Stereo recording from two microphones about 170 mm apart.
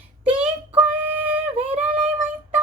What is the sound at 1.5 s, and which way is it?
Female singing, 35° right (ahead or behind).